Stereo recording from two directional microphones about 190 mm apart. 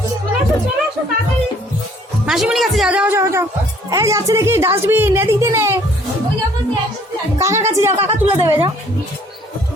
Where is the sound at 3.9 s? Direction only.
15° right (ahead or behind).